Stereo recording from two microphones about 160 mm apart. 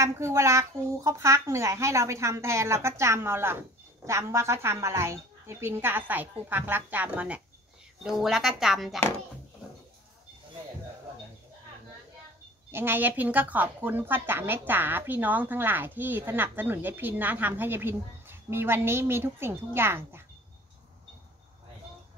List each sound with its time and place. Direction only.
0.0 s a woman's voice: 15° right (ahead or behind); by 9.0 s centre (ahead or behind)
12.7 s a woman's voice: 15° right (ahead or behind)